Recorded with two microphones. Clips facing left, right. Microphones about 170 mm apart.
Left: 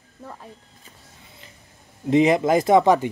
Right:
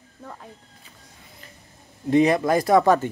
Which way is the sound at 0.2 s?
5° left (ahead or behind).